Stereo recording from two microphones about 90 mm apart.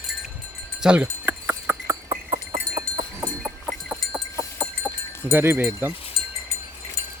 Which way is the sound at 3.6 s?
5° right (ahead or behind).